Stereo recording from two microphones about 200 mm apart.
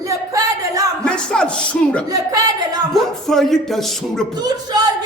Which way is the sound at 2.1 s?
20° right (ahead or behind).